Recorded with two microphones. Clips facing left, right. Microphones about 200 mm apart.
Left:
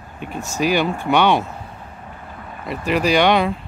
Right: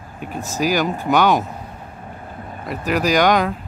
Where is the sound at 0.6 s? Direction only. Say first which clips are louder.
Left 1 dB; centre (ahead or behind).